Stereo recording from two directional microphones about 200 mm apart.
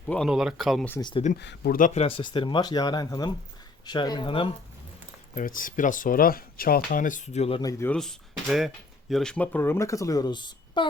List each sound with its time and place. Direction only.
0.1 s speech: centre (ahead or behind)
0.9 s speech: 15° left (ahead or behind)
1.1 s speech: 35° left (ahead or behind)
1.4 s speech: 55° left (ahead or behind); by 4.5 s 25° left (ahead or behind)
5.3 s speech: 45° left (ahead or behind)
7.6 s speech: 15° left (ahead or behind)
7.9 s speech: centre (ahead or behind); by 10.8 s 20° left (ahead or behind)